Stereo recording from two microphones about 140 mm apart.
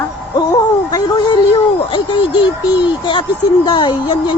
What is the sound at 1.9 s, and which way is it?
Speech, 35° left (ahead or behind).